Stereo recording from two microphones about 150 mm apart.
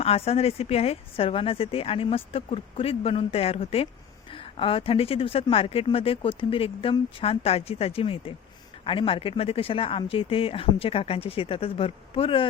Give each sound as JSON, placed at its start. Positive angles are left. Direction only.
{"t": 0.0, "sound": "a woman's voice", "side_deg": 40}